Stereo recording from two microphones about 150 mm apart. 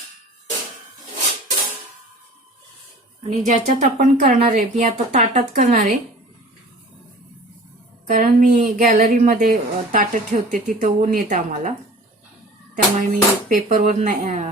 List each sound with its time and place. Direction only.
3.2 s speech: 55° right (ahead or behind)
5.1 s speech: 50° right (ahead or behind)
5.7 s speech: 60° right (ahead or behind)
8.0 s speech: 70° right (ahead or behind)
12.7 s speech: 60° right (ahead or behind)